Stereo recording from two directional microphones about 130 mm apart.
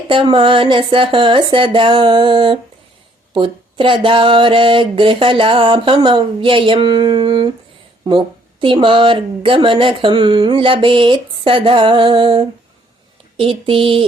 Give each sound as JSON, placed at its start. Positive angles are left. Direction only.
{"t": 0.1, "sound": "speech", "side_deg": -40}
{"t": 8.6, "sound": "speech", "side_deg": -40}
{"t": 13.4, "sound": "a sound", "side_deg": -45}